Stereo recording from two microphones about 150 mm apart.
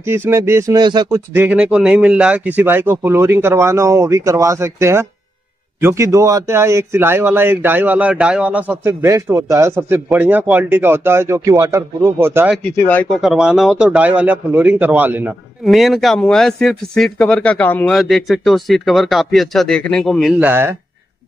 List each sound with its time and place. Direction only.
0.0 s speech: 15° right (ahead or behind)
1.3 s a man's voice: 10° right (ahead or behind)
12.8 s a man's voice: 10° left (ahead or behind); by 15.3 s 10° right (ahead or behind)
15.6 s speech: centre (ahead or behind)
20.3 s a man's voice: 15° right (ahead or behind)